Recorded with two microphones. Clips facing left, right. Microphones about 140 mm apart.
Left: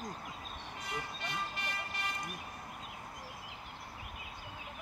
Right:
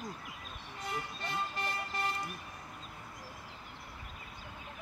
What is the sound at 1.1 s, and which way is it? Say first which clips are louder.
Vehicle: right 3 dB; 35° right (ahead or behind).